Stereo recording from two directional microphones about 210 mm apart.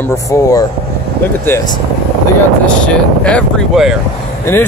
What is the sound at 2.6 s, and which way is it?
Speech, 5° left (ahead or behind).